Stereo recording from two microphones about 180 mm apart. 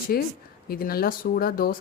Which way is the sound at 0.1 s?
55° left (ahead or behind).